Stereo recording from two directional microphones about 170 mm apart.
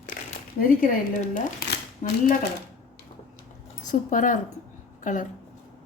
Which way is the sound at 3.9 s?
50° left (ahead or behind).